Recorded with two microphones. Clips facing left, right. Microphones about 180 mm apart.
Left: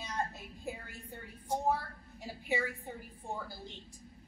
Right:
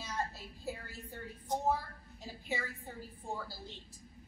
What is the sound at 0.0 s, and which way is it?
Music, 15° left (ahead or behind).